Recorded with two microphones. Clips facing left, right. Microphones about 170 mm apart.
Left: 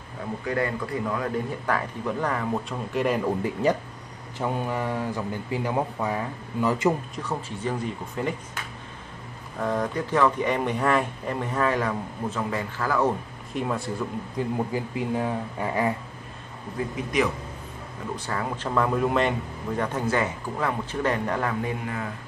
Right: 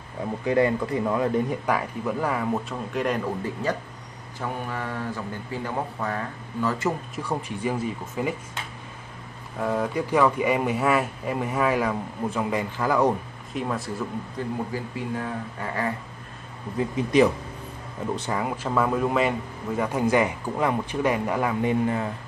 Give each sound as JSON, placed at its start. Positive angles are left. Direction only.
{"t": 0.5, "sound": "speech", "side_deg": -20}
{"t": 1.8, "sound": "speech", "side_deg": -5}
{"t": 4.4, "sound": "speech", "side_deg": 15}
{"t": 7.2, "sound": "speech", "side_deg": -10}
{"t": 9.6, "sound": "speech", "side_deg": -5}
{"t": 13.5, "sound": "speech", "side_deg": 0}
{"t": 14.4, "sound": "speech", "side_deg": 15}
{"t": 16.9, "sound": "speech", "side_deg": -30}
{"t": 18.4, "sound": "speech", "side_deg": -10}
{"t": 21.6, "sound": "speech", "side_deg": -30}